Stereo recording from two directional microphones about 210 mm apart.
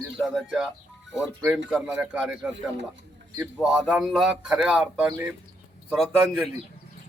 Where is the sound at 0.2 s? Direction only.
Centre (ahead or behind).